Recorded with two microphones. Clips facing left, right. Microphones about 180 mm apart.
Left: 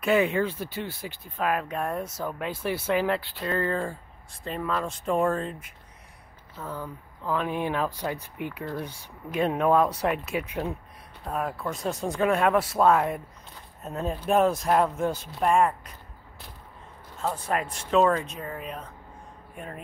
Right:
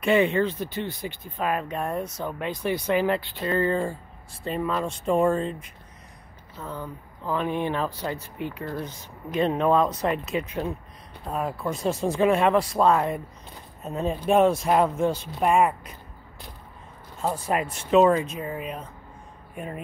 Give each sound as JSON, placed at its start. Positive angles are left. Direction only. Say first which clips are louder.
{"t": 0.0, "sound": "speech", "louder": "right 2 dB", "side_deg": 0}
{"t": 15.4, "sound": "speech", "louder": "right 1 dB", "side_deg": -10}
{"t": 17.2, "sound": "speech", "louder": "right 2 dB", "side_deg": -10}